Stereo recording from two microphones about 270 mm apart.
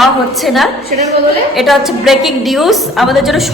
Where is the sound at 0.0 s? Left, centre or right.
Centre.